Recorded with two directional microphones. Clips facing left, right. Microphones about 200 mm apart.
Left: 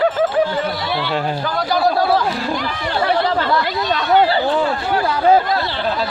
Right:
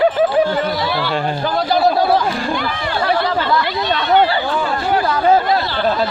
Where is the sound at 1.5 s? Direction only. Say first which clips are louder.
Right 2 dB; 25° right (ahead or behind).